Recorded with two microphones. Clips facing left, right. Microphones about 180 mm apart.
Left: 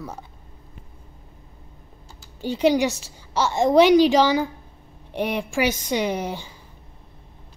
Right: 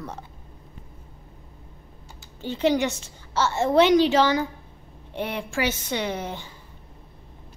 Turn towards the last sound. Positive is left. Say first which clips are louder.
# left 4 dB
turn(degrees=15)  # may be behind; listen again after turning